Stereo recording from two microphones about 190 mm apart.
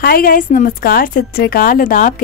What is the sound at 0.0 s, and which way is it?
A woman's voice, 50° left (ahead or behind).